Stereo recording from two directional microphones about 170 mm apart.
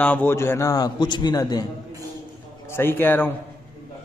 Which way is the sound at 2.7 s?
15° left (ahead or behind).